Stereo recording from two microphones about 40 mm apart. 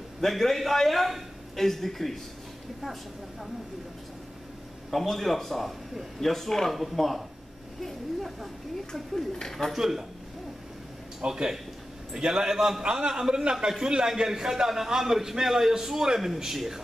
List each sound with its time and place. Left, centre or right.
0.2 s a man's voice: centre
4.9 s a man's voice: centre
9.7 s a man's voice: centre
11.1 s a man's voice: centre